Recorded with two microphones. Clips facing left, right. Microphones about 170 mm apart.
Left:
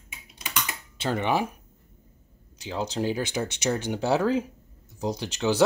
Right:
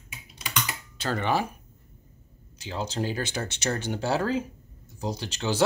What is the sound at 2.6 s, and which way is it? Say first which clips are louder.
Speech: left 2 dB; 15° left (ahead or behind).